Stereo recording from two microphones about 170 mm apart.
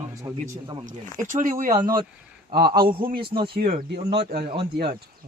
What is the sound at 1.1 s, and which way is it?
Speech, 50° right (ahead or behind).